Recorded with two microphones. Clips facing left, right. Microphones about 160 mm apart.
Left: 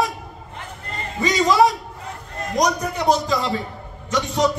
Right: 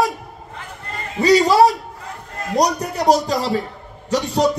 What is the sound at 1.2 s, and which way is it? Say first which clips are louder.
A man's voice: right 4 dB; 35° right (ahead or behind).